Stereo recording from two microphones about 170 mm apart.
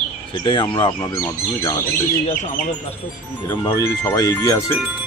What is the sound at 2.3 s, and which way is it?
Speech, 45° left (ahead or behind).